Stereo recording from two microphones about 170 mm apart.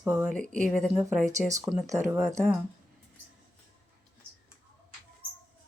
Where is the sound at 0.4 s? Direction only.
50° right (ahead or behind).